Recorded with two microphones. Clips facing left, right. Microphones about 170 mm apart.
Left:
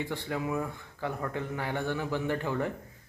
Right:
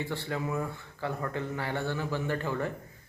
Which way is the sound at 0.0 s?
15° left (ahead or behind).